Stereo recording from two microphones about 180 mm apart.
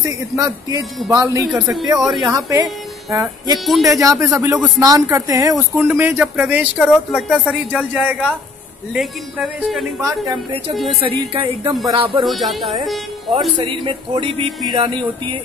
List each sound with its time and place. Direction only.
0.0 s speech: 20° right (ahead or behind)
1.4 s a man's voice: centre (ahead or behind)
2.3 s a man's voice: 20° right (ahead or behind); by 11.0 s centre (ahead or behind)
11.0 s a woman's voice: 30° right (ahead or behind)
12.2 s a man's voice: centre (ahead or behind)
13.6 s speech: 30° right (ahead or behind)